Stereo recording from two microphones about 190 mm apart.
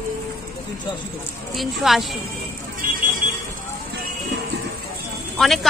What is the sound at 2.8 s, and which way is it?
Vehicle, 50° right (ahead or behind).